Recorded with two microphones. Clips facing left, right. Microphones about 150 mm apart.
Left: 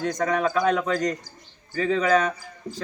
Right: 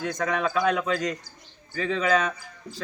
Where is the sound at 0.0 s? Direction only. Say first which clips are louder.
Left 3 dB; 40° left (ahead or behind).